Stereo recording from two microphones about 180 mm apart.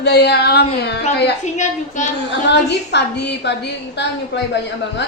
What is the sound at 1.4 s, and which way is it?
Speech, 40° left (ahead or behind).